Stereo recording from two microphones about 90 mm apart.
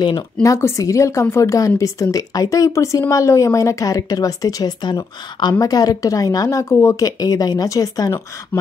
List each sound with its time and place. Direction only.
0.4 s speech: 35° left (ahead or behind)